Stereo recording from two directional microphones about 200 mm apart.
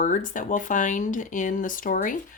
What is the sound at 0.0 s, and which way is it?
Speech, 40° left (ahead or behind).